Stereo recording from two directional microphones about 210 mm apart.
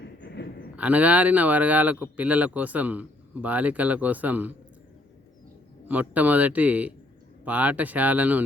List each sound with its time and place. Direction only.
0.0 s a sound: 55° left (ahead or behind)
0.8 s speech: 5° right (ahead or behind)
5.9 s speech: 5° right (ahead or behind)